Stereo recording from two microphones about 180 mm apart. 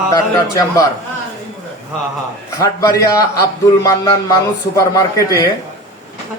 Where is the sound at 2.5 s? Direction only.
20° left (ahead or behind).